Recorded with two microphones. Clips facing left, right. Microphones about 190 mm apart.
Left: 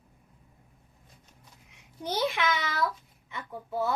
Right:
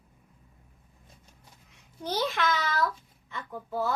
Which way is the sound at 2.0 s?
15° left (ahead or behind).